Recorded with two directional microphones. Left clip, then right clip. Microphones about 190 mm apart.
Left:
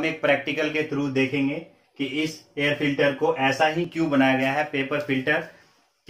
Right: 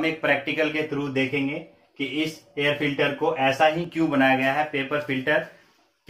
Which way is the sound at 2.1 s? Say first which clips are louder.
Even; 5° left (ahead or behind).